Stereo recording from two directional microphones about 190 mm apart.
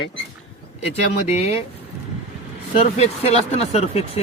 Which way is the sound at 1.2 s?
35° left (ahead or behind).